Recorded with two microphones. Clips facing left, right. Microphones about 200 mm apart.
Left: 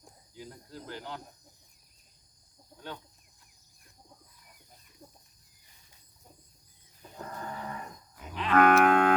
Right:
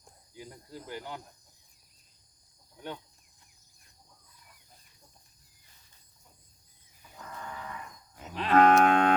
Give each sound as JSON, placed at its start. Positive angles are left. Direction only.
{"t": 0.3, "sound": "cricket", "side_deg": -15}
{"t": 2.7, "sound": "a sound", "side_deg": -15}
{"t": 7.2, "sound": "livestock", "side_deg": 40}
{"t": 8.4, "sound": "moo", "side_deg": -30}